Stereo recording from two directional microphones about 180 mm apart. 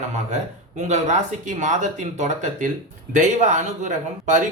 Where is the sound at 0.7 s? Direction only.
40° right (ahead or behind).